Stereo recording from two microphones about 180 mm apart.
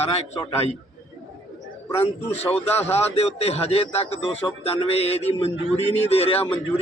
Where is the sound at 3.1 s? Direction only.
35° left (ahead or behind).